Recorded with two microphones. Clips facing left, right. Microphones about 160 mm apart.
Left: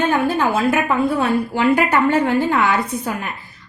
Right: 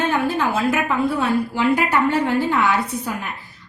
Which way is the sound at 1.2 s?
55° left (ahead or behind).